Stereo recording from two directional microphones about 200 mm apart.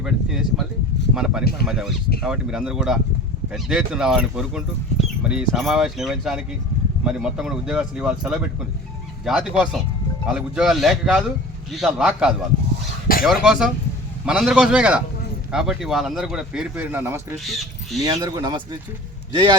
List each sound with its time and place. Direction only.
0.0 s a man's voice: 5° right (ahead or behind)
18.0 s speech: 20° right (ahead or behind)